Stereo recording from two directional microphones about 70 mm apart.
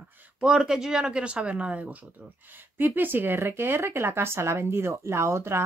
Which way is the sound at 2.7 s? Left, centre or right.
Right.